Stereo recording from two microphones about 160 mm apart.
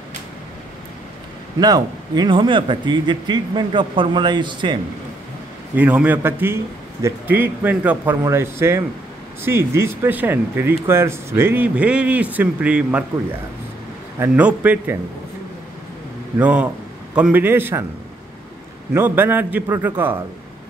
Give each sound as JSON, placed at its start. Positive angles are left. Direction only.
{"t": 1.6, "sound": "speech", "side_deg": -25}
{"t": 5.8, "sound": "speech", "side_deg": -10}
{"t": 14.2, "sound": "speech", "side_deg": -10}
{"t": 16.3, "sound": "a man's voice", "side_deg": -10}
{"t": 18.9, "sound": "speech", "side_deg": -10}